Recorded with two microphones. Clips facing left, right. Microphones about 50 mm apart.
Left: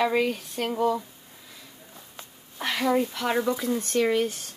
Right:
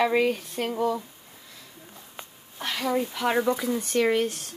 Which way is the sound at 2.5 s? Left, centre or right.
Centre.